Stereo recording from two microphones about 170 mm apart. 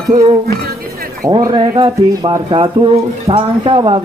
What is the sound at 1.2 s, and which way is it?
Speech, 25° right (ahead or behind).